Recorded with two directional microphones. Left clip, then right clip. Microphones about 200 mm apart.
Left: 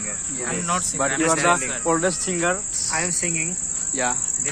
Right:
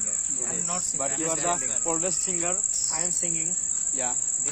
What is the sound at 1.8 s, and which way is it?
Cricket, 5° left (ahead or behind).